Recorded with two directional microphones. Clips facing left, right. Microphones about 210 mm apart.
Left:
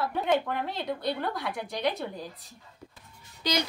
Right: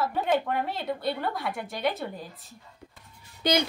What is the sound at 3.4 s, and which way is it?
Speech, 55° right (ahead or behind).